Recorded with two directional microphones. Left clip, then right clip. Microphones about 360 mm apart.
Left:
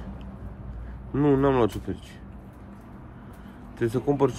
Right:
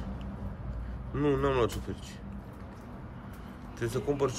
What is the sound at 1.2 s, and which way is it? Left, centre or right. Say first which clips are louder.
Speech: left 6 dB; centre.